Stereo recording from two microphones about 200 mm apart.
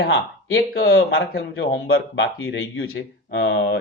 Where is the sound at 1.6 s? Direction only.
80° left.